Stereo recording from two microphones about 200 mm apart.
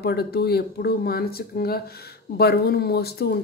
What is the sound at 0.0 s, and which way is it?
Speech, 50° left (ahead or behind).